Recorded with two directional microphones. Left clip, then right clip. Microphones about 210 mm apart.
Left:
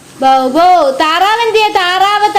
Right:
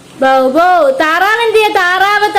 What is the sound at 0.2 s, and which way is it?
A woman's voice, 10° right (ahead or behind).